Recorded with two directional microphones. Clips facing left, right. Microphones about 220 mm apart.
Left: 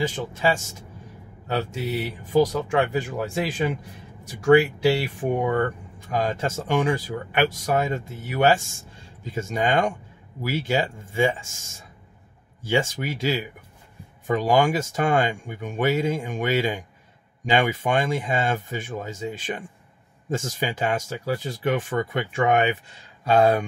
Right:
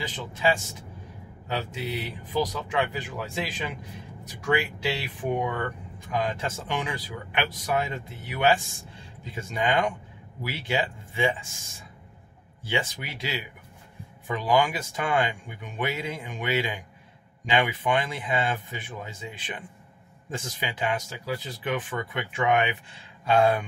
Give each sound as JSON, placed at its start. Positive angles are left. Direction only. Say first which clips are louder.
{"t": 0.0, "sound": "speech", "louder": "left 4 dB", "side_deg": 50}
{"t": 5.0, "sound": "speech", "louder": "left 4 dB", "side_deg": 45}